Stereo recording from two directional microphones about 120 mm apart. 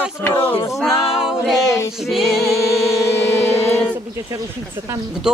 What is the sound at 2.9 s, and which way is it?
Music, 20° left (ahead or behind).